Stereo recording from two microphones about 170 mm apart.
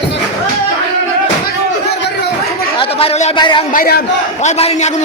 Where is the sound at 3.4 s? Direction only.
25° left (ahead or behind).